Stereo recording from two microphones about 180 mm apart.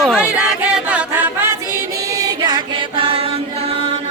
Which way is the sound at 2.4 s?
25° right (ahead or behind).